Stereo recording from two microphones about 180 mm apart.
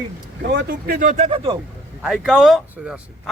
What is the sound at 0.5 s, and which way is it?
Speech, 55° right (ahead or behind).